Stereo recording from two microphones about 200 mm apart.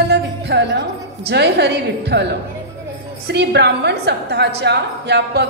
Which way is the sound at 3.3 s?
55° right (ahead or behind).